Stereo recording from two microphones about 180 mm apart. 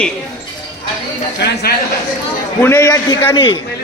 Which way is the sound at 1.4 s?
65° left (ahead or behind).